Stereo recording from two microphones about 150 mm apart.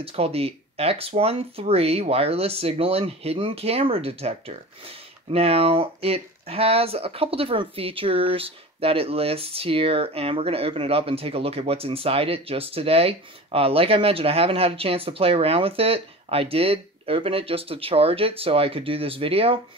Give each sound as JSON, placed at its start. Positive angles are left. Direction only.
{"t": 0.0, "sound": "speech", "side_deg": -40}